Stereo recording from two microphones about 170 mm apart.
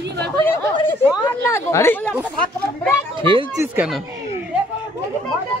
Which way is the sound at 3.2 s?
30° right (ahead or behind).